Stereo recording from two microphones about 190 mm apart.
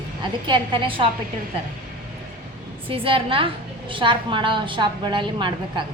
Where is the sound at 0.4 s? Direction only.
25° right (ahead or behind).